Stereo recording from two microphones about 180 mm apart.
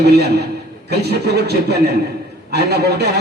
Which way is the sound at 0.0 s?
65° right (ahead or behind).